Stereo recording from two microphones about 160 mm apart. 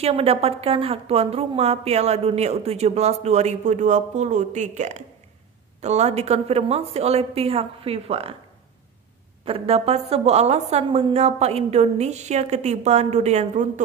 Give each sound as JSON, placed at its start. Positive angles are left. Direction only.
{"t": 0.0, "sound": "a woman's voice", "side_deg": -40}
{"t": 9.4, "sound": "a woman's voice", "side_deg": -35}